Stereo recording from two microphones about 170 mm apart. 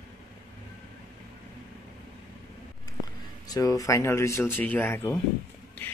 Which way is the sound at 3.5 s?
20° left (ahead or behind).